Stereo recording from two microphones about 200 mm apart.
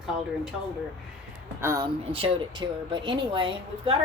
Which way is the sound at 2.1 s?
25° right (ahead or behind).